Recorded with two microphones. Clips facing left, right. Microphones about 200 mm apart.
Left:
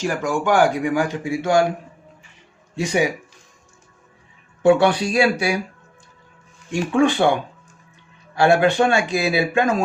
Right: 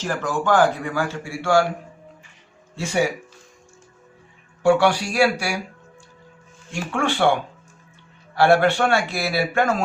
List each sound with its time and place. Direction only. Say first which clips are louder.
0.0 s a man's voice: left 2 dB; 10° left (ahead or behind)
2.7 s a man's voice: left 2 dB; 15° left (ahead or behind)
4.6 s speech: left 2 dB; 20° left (ahead or behind)
6.7 s a man's voice: left 7 dB; 15° left (ahead or behind)
8.4 s a man's voice: left 1 dB; 15° left (ahead or behind)